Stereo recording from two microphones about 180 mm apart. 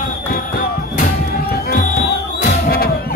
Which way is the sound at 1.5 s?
55° left (ahead or behind).